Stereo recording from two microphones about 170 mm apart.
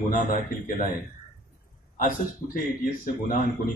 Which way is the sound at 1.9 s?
55° left (ahead or behind).